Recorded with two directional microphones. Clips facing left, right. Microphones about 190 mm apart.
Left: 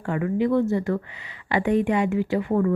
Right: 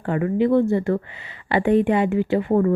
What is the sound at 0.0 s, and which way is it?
A woman's voice, 35° right (ahead or behind).